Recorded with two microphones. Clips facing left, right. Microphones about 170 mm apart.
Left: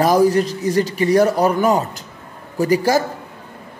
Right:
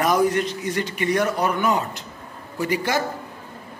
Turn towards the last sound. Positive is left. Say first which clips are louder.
# left 7 dB
turn(degrees=40)  # may be behind; listen again after turning